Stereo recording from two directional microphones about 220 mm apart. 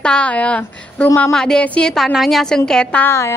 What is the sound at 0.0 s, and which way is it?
A woman's voice, 5° left (ahead or behind).